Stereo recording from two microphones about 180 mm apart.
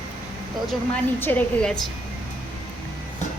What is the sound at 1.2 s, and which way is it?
Speech, 5° left (ahead or behind).